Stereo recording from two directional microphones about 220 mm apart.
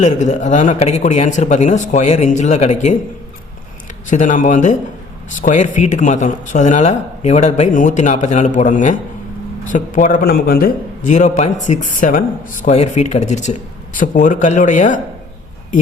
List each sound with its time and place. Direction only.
0.0 s a man's voice: 30° left (ahead or behind)
4.1 s a man's voice: 35° left (ahead or behind)